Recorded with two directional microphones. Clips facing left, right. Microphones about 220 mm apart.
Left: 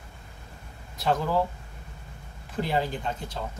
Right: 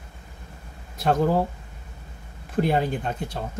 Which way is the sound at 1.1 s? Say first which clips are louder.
Right 5 dB; 50° right (ahead or behind).